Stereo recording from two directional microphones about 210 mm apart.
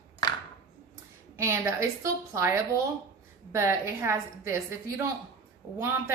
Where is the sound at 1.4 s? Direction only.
15° right (ahead or behind).